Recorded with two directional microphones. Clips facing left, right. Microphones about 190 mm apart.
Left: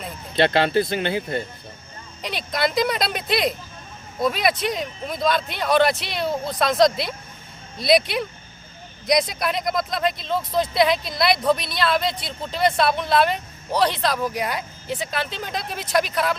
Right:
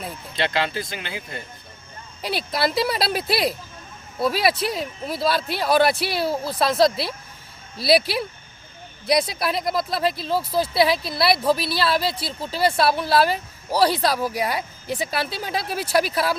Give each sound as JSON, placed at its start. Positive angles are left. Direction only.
{"t": 0.3, "sound": "speech", "side_deg": 40}
{"t": 2.2, "sound": "speech", "side_deg": -5}
{"t": 9.3, "sound": "speech", "side_deg": -5}